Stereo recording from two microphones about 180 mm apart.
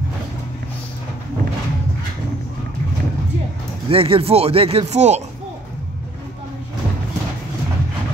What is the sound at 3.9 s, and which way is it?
Speech, 30° right (ahead or behind).